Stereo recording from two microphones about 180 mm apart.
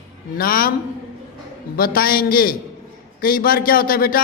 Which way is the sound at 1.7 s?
55° left (ahead or behind).